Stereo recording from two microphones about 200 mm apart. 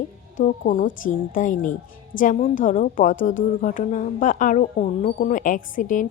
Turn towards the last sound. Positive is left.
turn(degrees=40)  # may be behind; listen again after turning